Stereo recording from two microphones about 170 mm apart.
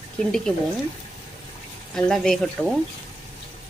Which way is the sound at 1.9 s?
5° left (ahead or behind).